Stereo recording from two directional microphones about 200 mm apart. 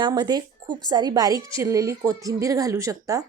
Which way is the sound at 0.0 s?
20° right (ahead or behind).